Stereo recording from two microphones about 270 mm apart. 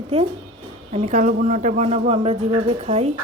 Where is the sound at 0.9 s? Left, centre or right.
Right.